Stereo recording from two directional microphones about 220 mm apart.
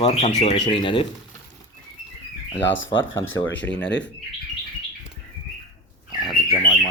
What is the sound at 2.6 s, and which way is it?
Speech, 60° left (ahead or behind).